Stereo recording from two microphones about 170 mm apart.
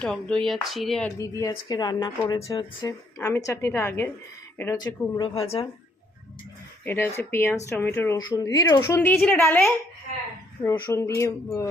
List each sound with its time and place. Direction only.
0.0 s speech: 5° left (ahead or behind)
1.2 s speech: 20° left (ahead or behind)
6.8 s speech: 15° left (ahead or behind)